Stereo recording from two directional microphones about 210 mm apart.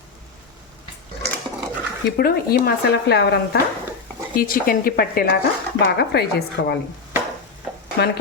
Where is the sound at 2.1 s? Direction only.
50° left (ahead or behind).